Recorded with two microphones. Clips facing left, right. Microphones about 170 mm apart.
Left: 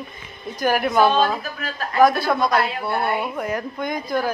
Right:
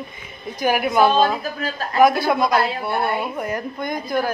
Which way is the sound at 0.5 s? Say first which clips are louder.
Even; 10° right (ahead or behind).